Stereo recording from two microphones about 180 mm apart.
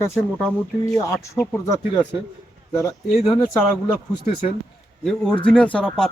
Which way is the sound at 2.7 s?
15° left (ahead or behind).